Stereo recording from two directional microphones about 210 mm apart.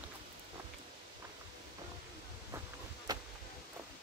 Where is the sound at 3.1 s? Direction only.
20° right (ahead or behind).